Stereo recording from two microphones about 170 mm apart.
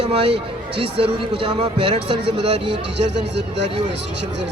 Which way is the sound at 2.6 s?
90° right.